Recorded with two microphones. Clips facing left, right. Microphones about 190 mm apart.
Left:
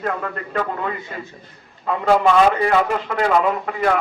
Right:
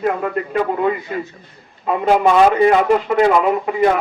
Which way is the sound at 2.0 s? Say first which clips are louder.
Right 2 dB; 15° right (ahead or behind).